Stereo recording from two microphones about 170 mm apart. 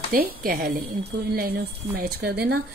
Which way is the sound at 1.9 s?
70° right (ahead or behind).